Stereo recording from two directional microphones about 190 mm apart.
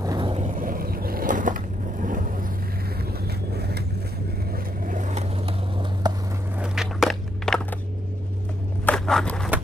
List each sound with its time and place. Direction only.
0.0 s vehicle: 20° right (ahead or behind)
0.6 s skateboard: 50° right (ahead or behind)
3.1 s vehicle: 55° right (ahead or behind)
4.8 s vehicle: 40° right (ahead or behind)
6.0 s a sound: 20° right (ahead or behind)
6.6 s walk: 5° right (ahead or behind)
8.8 s a sound: 5° left (ahead or behind)